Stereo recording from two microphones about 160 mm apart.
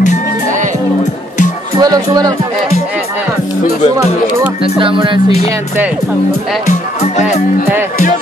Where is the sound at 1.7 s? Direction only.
25° right (ahead or behind).